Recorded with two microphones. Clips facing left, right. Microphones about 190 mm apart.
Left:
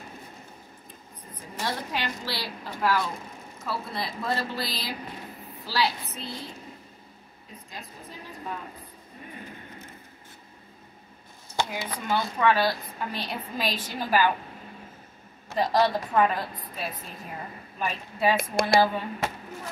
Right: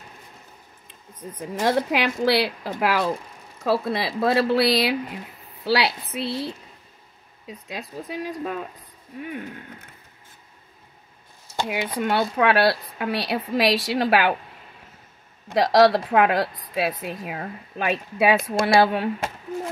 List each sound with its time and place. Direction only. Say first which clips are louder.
1.6 s a woman's voice: right 10 dB; 80° right
11.6 s a woman's voice: right 8 dB; 70° right (ahead or behind)
15.5 s a woman's voice: right 7 dB; 80° right